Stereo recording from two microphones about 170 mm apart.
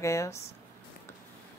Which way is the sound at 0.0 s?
15° left (ahead or behind).